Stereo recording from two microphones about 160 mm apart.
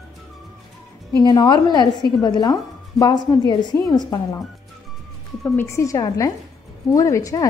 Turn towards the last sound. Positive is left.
turn(degrees=20)  # may be behind; listen again after turning